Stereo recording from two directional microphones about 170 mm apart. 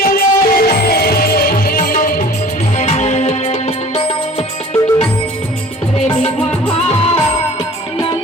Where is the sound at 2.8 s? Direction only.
40° left (ahead or behind).